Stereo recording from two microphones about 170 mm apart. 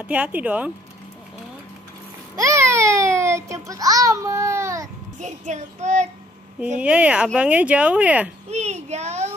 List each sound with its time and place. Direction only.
0.0 s speech: 5° right (ahead or behind)
2.3 s babbling: 15° right (ahead or behind)
3.6 s a child's voice: 20° right (ahead or behind)
5.2 s child singing: 45° right (ahead or behind)
6.8 s speech: 5° right (ahead or behind)
8.5 s a child's voice: 40° right (ahead or behind)